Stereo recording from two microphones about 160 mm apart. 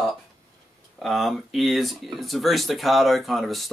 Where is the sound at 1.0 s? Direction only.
Centre (ahead or behind).